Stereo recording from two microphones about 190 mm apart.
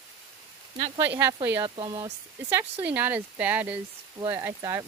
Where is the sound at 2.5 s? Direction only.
10° right (ahead or behind).